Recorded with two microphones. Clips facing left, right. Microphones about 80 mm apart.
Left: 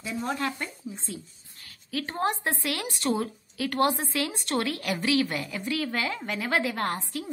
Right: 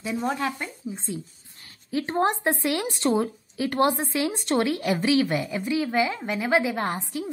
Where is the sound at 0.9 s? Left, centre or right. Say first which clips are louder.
Right 5 dB; right.